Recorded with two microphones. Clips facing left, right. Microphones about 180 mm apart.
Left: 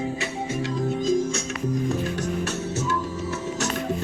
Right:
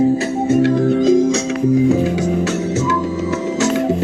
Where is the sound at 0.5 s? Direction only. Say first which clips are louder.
Right 12 dB; 75° right (ahead or behind).